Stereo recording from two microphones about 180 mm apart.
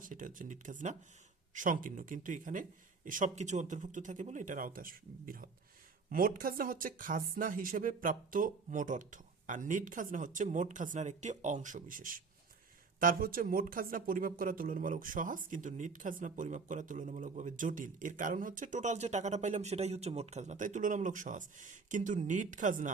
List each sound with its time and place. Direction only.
0.0 s speech: 45° right (ahead or behind)